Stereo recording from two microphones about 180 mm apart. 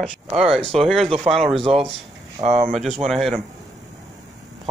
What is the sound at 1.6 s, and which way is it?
Speech, 30° right (ahead or behind).